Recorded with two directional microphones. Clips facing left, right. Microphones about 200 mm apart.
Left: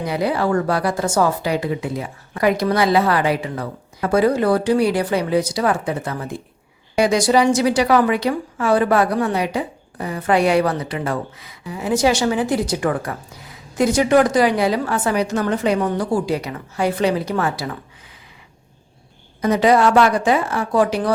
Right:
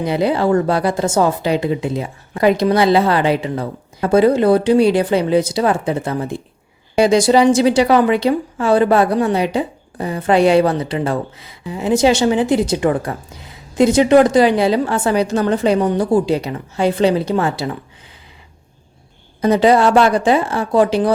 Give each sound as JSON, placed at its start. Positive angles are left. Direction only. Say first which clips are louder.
{"t": 0.0, "sound": "a woman's voice", "louder": "right 4 dB", "side_deg": -25}
{"t": 19.4, "sound": "a woman's voice", "louder": "right 3 dB", "side_deg": -30}